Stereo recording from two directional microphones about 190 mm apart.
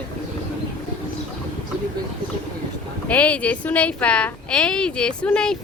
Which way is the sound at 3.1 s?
5° left (ahead or behind).